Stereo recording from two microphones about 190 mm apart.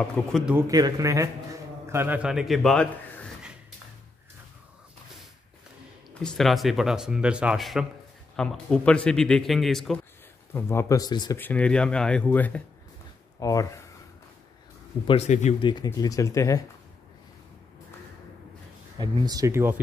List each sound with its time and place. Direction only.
0.2 s speech: 5° left (ahead or behind)
0.6 s a man's voice: 20° right (ahead or behind); by 3.5 s 5° left (ahead or behind)
6.2 s speech: centre (ahead or behind)
10.5 s speech: 15° left (ahead or behind)
11.3 s speech: 10° left (ahead or behind)
15.0 s speech: 35° left (ahead or behind)
15.6 s speech: 20° left (ahead or behind)
18.9 s speech: 20° right (ahead or behind)